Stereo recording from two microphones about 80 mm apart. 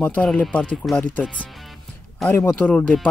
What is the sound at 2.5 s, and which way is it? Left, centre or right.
Speech, centre.